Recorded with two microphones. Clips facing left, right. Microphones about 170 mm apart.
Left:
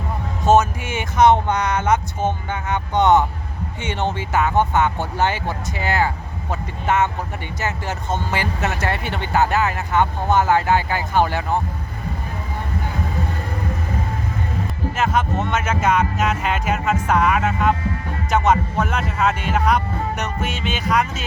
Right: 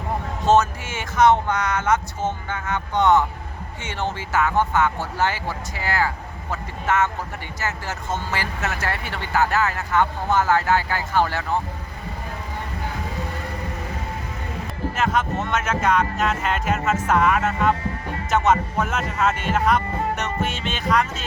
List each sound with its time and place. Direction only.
0.4 s speech: 10° left (ahead or behind)
14.9 s music: centre (ahead or behind)